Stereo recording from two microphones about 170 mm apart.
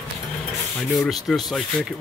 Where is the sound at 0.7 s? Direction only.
Centre (ahead or behind).